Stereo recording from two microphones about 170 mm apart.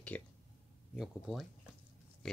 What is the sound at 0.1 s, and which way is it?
Speech, 10° left (ahead or behind).